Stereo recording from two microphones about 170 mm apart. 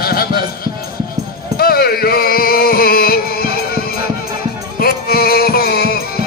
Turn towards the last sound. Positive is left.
turn(degrees=65)  # may be behind; listen again after turning